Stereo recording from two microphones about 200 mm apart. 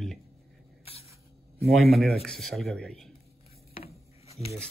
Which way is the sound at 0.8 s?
30° left (ahead or behind).